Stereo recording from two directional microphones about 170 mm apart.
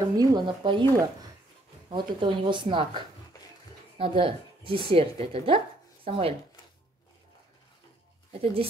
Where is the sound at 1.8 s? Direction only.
30° right (ahead or behind).